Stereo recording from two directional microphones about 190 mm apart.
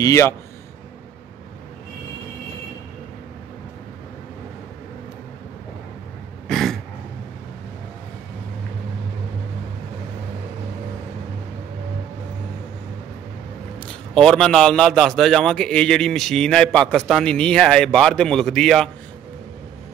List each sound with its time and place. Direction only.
0.0 s a man's voice: 15° left (ahead or behind)
6.5 s throat clearing: centre (ahead or behind)
13.7 s a man's voice: 5° left (ahead or behind)